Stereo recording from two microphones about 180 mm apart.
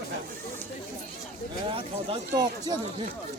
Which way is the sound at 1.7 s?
25° right (ahead or behind).